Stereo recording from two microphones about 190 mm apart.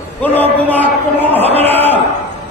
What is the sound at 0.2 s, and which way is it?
Speech, 10° left (ahead or behind).